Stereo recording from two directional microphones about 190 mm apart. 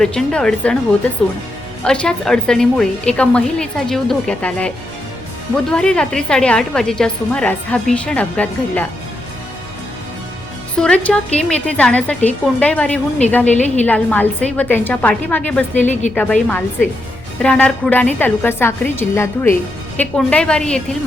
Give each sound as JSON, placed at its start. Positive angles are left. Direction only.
{"t": 0.0, "sound": "a woman's voice", "side_deg": 5}
{"t": 5.7, "sound": "a woman's voice", "side_deg": 5}
{"t": 10.8, "sound": "a woman's voice", "side_deg": 5}
{"t": 13.5, "sound": "a woman's voice", "side_deg": 35}
{"t": 13.8, "sound": "a woman's voice", "side_deg": 10}